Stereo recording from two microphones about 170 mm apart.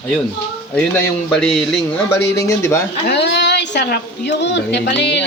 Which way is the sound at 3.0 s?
90° left.